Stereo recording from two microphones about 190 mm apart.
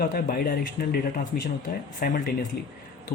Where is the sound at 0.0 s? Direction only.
45° left (ahead or behind).